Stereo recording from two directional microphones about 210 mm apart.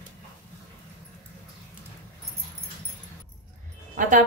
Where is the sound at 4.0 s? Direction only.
40° right (ahead or behind).